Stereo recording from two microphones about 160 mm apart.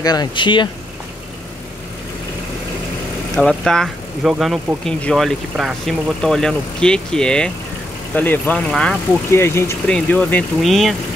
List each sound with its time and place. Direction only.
0.0 s speech: 25° left (ahead or behind)
3.3 s speech: 5° left (ahead or behind)